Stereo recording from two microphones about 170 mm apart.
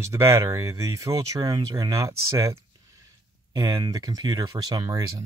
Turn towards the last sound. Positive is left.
turn(degrees=-20)  # may be behind; listen again after turning